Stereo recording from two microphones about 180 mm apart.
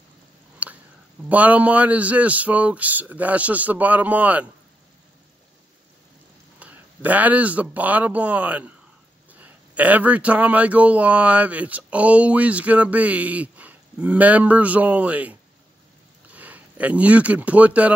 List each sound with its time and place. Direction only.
0.6 s whispering: 10° right (ahead or behind)
1.3 s speech: 10° right (ahead or behind)
6.6 s speech: 10° right (ahead or behind)
16.3 s speech: 10° right (ahead or behind)